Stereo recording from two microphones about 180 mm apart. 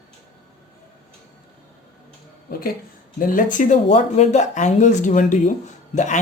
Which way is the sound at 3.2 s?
50° left (ahead or behind).